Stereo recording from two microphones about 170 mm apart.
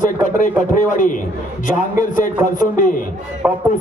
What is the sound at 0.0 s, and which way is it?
A man's voice, 50° left (ahead or behind).